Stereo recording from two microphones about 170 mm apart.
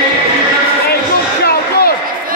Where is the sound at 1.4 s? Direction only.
65° left (ahead or behind).